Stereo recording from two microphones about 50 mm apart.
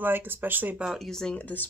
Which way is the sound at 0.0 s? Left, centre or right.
Right.